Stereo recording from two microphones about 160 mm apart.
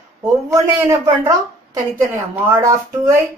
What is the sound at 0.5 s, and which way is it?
A woman's voice, 20° right (ahead or behind).